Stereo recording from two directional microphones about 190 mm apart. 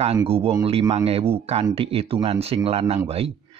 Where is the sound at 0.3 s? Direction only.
30° right (ahead or behind).